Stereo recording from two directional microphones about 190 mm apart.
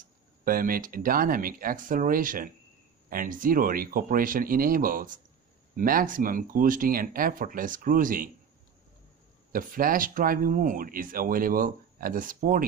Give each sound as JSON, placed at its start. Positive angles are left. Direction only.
{"t": 0.5, "sound": "speech", "side_deg": -50}
{"t": 9.5, "sound": "speech", "side_deg": -45}